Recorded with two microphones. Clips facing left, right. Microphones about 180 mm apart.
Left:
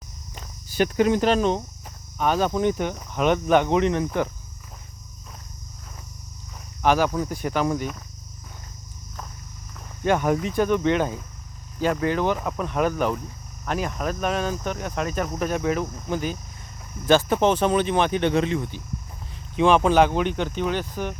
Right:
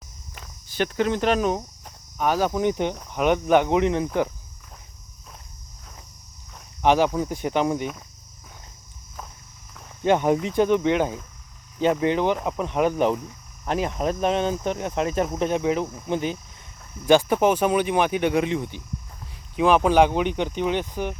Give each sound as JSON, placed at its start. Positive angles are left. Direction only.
{"t": 0.7, "sound": "speech", "side_deg": 10}
{"t": 1.3, "sound": "speech", "side_deg": -5}
{"t": 6.8, "sound": "speech", "side_deg": -20}
{"t": 10.0, "sound": "speech", "side_deg": -20}